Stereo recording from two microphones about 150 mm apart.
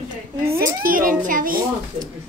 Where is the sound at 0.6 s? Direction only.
65° right (ahead or behind).